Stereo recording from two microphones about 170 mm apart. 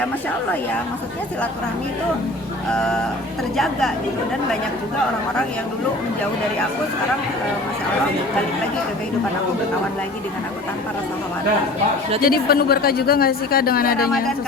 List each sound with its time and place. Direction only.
2.7 s a woman's voice: 5° left (ahead or behind)
12.2 s a woman's voice: 60° left (ahead or behind)